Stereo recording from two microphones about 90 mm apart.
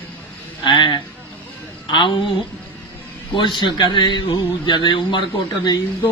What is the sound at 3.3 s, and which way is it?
Speech, 60° left (ahead or behind).